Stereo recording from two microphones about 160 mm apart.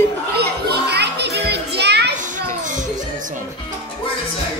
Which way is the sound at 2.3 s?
55° right (ahead or behind).